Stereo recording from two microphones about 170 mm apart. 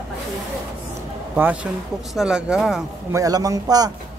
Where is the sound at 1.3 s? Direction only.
10° right (ahead or behind).